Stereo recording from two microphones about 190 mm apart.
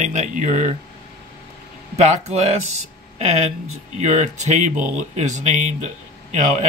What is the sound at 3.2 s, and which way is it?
Speech, 35° right (ahead or behind).